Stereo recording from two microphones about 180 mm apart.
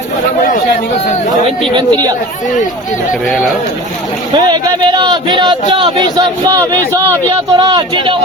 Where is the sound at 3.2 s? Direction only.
Centre (ahead or behind).